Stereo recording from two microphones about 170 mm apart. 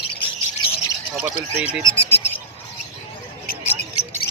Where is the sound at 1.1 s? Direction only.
5° right (ahead or behind).